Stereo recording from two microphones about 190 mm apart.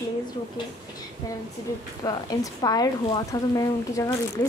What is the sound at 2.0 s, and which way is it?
Speech, 20° left (ahead or behind).